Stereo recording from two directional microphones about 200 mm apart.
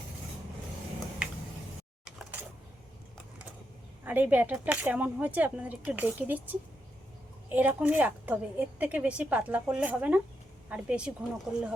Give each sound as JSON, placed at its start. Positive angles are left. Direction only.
{"t": 4.0, "sound": "a woman's voice", "side_deg": -10}
{"t": 7.5, "sound": "a woman's voice", "side_deg": -5}